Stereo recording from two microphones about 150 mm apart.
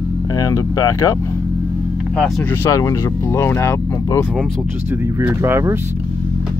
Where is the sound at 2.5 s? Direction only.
20° left (ahead or behind).